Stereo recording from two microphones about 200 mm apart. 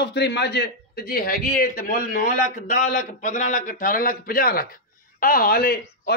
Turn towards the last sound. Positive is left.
turn(degrees=50)  # may be behind; listen again after turning